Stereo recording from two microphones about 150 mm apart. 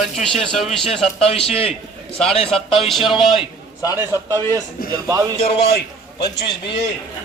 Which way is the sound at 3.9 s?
20° right (ahead or behind).